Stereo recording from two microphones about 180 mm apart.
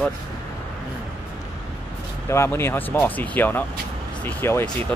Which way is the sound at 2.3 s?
15° left (ahead or behind).